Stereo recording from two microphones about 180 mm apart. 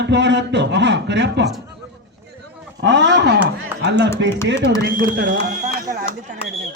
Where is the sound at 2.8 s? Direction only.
80° right.